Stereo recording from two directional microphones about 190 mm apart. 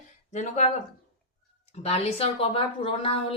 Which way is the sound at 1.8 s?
35° left (ahead or behind).